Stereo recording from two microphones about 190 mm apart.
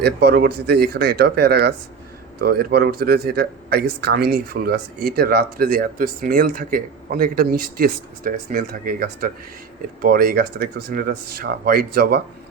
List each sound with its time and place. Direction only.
0.0 s speech: 55° right (ahead or behind)